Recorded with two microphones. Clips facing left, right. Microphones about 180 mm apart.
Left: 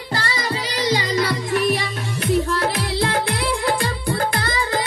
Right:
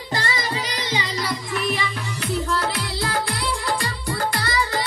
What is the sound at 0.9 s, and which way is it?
Music, 50° left (ahead or behind).